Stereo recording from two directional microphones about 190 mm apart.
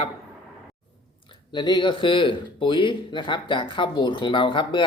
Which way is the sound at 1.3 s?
25° left (ahead or behind).